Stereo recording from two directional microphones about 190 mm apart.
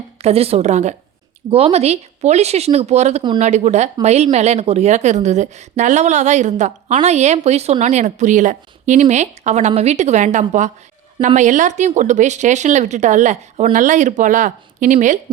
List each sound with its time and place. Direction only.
0.2 s a woman's voice: 30° right (ahead or behind)